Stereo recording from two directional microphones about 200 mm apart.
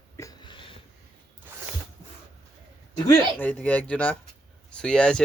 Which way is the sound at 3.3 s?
5° left (ahead or behind).